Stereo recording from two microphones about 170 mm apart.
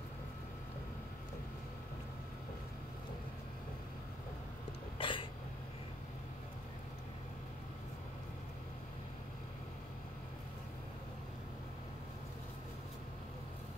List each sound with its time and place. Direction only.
4.9 s throat clearing: 30° left (ahead or behind)